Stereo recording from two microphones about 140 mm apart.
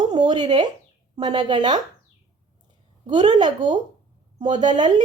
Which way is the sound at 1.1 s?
30° right (ahead or behind).